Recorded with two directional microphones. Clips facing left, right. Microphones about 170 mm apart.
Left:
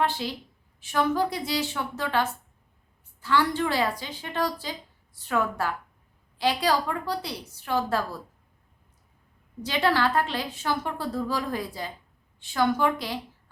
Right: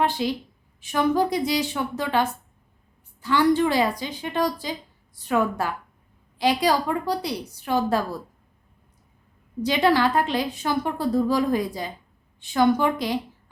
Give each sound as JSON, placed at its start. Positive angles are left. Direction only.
{"t": 0.0, "sound": "a woman's voice", "side_deg": -15}
{"t": 9.6, "sound": "a woman's voice", "side_deg": -15}